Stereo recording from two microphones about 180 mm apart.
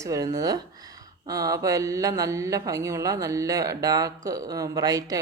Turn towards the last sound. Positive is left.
turn(degrees=-20)  # may be behind; listen again after turning